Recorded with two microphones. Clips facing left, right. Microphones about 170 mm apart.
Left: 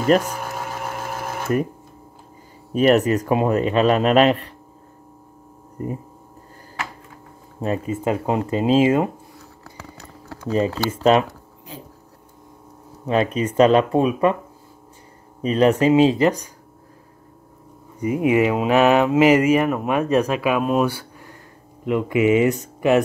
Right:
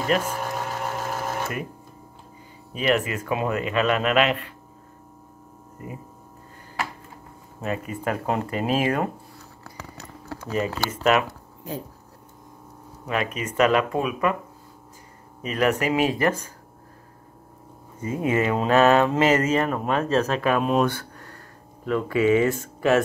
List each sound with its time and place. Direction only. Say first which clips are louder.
0.2 s sewing machine: even; centre (ahead or behind)
2.7 s speech: left 8 dB; 45° left (ahead or behind)
5.8 s speech: left 10 dB; 40° left (ahead or behind)
7.6 s speech: left 5 dB; 30° left (ahead or behind)
10.5 s speech: left 5 dB; 30° left (ahead or behind)
13.0 s speech: left 7 dB; 30° left (ahead or behind)
15.4 s speech: left 7 dB; 30° left (ahead or behind)
18.0 s speech: left 5 dB; 15° left (ahead or behind)